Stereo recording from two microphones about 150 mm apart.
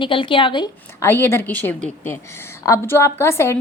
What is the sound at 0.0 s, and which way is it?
Speech, 35° left (ahead or behind).